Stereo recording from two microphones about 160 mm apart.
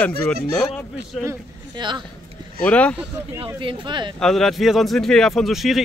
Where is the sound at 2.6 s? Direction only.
10° left (ahead or behind).